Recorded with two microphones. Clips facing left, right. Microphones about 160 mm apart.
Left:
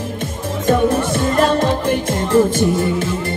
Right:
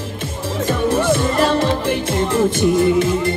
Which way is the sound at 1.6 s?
45° left (ahead or behind).